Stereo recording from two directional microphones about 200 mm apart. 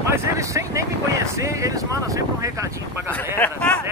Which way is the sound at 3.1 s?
10° left (ahead or behind).